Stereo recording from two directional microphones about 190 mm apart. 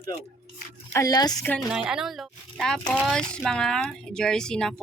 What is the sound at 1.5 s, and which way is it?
Chopping, centre (ahead or behind).